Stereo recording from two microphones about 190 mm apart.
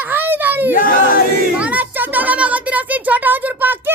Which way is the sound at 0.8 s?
50° left (ahead or behind).